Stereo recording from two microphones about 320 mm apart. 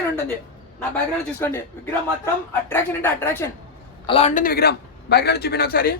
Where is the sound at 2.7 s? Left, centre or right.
Centre.